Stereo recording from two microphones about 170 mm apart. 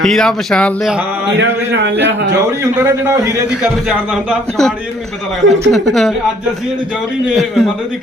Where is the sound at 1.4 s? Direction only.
90° right.